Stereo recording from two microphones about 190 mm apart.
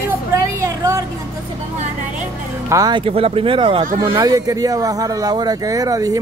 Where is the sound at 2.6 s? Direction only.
20° right (ahead or behind).